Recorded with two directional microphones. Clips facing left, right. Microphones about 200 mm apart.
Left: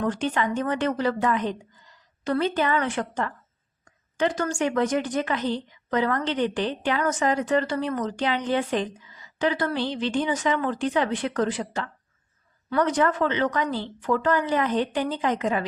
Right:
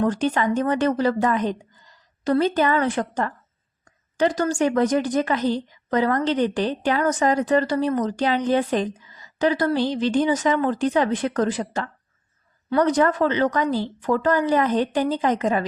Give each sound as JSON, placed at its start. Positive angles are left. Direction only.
{"t": 0.0, "sound": "a woman's voice", "side_deg": -40}